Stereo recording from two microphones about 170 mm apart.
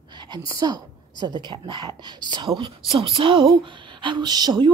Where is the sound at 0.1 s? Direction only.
25° right (ahead or behind).